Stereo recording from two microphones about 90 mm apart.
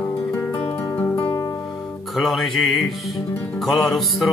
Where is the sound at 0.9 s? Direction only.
25° left (ahead or behind).